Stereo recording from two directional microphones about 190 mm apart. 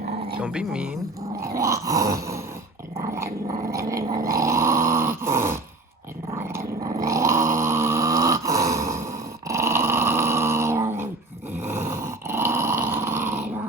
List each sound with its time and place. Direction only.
0.3 s speech: 5° right (ahead or behind)
1.4 s dog: 15° right (ahead or behind)
3.4 s dog: 40° right (ahead or behind)
3.7 s dog: 15° right (ahead or behind)
6.3 s growling: 15° right (ahead or behind)
9.5 s dog: 15° right (ahead or behind)